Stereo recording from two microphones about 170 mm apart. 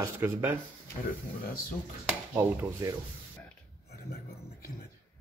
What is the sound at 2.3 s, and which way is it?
Speech, 20° right (ahead or behind).